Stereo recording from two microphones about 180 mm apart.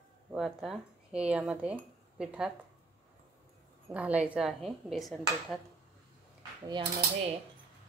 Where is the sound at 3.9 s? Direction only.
10° right (ahead or behind).